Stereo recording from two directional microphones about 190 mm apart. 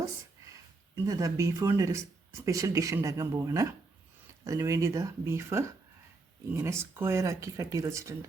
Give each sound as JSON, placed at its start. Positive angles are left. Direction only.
{"t": 1.0, "sound": "speech", "side_deg": -15}